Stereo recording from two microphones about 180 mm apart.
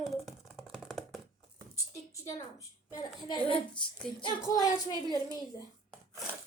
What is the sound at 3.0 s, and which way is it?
Speech, 25° left (ahead or behind).